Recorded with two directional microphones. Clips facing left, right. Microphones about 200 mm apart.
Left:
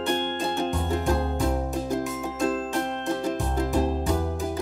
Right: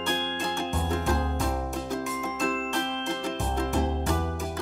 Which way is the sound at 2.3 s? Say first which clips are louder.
Left 4 dB; 20° left (ahead or behind).